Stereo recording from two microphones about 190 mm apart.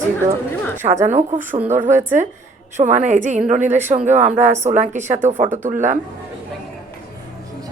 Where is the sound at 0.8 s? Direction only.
40° right (ahead or behind).